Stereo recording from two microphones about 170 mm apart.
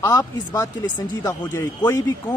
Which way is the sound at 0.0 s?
15° left (ahead or behind).